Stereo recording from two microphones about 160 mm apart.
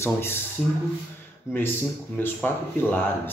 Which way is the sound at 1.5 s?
15° left (ahead or behind).